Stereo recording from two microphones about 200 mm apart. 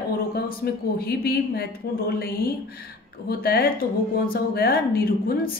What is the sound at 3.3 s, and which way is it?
Speech, 50° left (ahead or behind).